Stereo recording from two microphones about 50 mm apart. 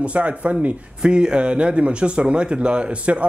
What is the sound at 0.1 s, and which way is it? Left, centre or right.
Speech, right.